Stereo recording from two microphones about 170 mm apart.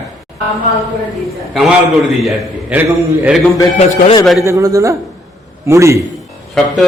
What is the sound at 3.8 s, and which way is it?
Speech, 40° left (ahead or behind).